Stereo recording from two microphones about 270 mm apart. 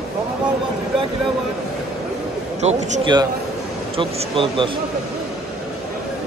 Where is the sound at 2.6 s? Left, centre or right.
Right.